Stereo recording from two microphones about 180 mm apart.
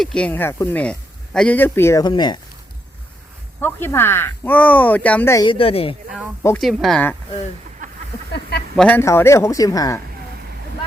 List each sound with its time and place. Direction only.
0.0 s speech: 5° left (ahead or behind); by 2.4 s 25° left (ahead or behind)
3.6 s speech: 10° left (ahead or behind)
5.5 s speech: 30° left (ahead or behind)
6.6 s speech: centre (ahead or behind)
7.8 s a sound: 45° right (ahead or behind)
8.3 s a sound: 65° left (ahead or behind)
8.7 s speech: 5° left (ahead or behind)